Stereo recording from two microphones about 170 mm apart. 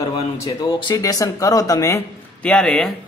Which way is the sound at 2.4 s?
5° left (ahead or behind).